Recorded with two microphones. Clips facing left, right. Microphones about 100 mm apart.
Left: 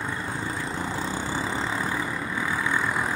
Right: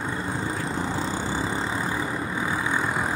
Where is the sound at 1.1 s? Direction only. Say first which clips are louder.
Right 1 dB; 10° right (ahead or behind).